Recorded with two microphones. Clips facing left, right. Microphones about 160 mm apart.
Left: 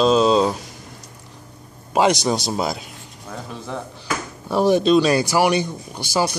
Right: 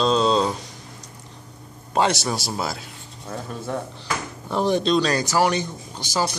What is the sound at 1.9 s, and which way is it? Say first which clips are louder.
Speech: left 4 dB; 15° left (ahead or behind).